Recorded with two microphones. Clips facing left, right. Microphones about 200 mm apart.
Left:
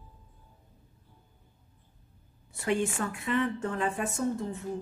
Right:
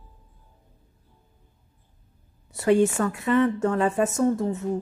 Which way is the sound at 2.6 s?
40° right (ahead or behind).